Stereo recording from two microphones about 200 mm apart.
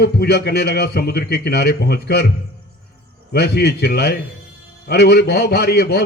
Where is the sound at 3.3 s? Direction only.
55° left (ahead or behind).